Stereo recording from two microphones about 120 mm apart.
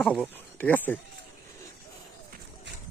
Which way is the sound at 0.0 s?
Centre (ahead or behind).